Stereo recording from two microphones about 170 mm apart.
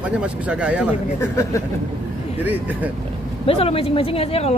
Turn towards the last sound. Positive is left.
turn(degrees=35)  # may be behind; listen again after turning